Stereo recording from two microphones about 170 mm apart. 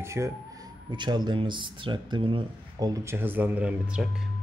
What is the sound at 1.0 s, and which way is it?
Speech, 25° right (ahead or behind).